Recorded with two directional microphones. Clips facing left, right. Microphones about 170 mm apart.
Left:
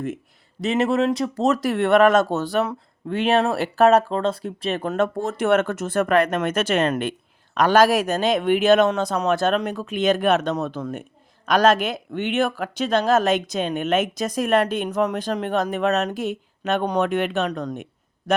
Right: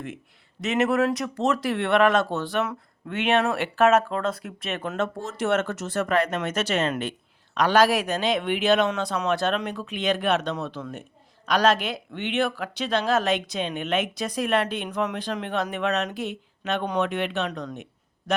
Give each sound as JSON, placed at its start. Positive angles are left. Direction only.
{"t": 0.6, "sound": "speech", "side_deg": 30}
{"t": 4.9, "sound": "speech", "side_deg": 55}